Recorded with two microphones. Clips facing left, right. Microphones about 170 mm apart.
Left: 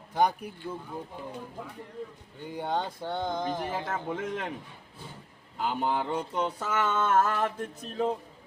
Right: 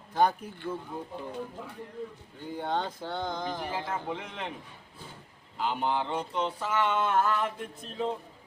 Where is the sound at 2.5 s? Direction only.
10° left (ahead or behind).